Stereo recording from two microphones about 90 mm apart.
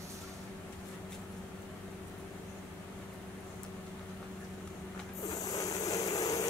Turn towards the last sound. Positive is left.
turn(degrees=40)  # may be behind; listen again after turning